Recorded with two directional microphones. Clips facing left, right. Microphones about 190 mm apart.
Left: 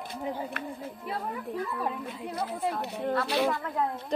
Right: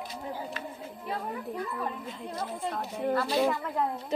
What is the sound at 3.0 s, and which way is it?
Speech, centre (ahead or behind).